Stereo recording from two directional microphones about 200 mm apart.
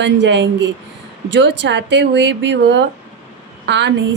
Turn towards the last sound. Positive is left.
turn(degrees=-60)  # may be behind; listen again after turning